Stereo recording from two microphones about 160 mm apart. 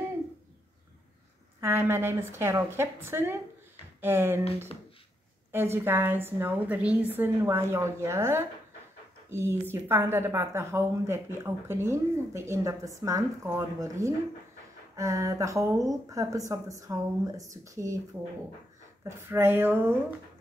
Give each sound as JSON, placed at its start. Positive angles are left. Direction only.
{"t": 1.6, "sound": "a woman's voice", "side_deg": -15}
{"t": 5.5, "sound": "a woman's voice", "side_deg": -15}
{"t": 19.0, "sound": "a woman's voice", "side_deg": -15}